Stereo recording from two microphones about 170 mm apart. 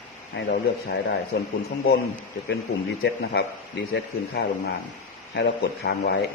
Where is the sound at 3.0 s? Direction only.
70° left (ahead or behind).